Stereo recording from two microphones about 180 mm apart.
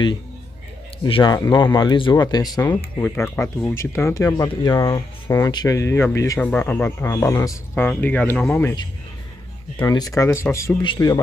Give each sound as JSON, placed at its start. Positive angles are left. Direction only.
{"t": 1.0, "sound": "speech", "side_deg": 25}
{"t": 9.8, "sound": "speech", "side_deg": 20}